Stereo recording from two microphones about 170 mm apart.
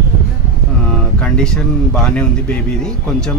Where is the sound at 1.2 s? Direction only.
5° left (ahead or behind).